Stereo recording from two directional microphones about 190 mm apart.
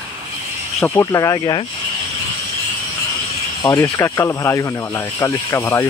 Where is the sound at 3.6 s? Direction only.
15° left (ahead or behind).